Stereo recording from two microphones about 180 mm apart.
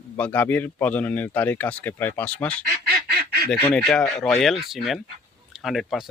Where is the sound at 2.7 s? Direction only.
60° right (ahead or behind).